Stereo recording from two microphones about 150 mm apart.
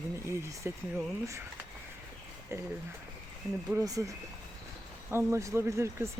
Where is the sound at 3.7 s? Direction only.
20° right (ahead or behind).